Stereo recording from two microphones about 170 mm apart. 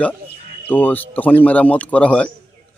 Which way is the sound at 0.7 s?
10° left (ahead or behind).